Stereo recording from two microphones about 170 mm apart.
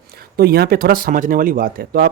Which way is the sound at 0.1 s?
65° right (ahead or behind).